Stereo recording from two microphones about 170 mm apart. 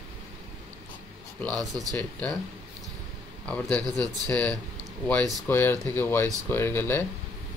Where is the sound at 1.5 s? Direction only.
20° right (ahead or behind).